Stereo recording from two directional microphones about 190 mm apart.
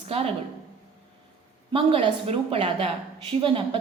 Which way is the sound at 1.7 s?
30° right (ahead or behind).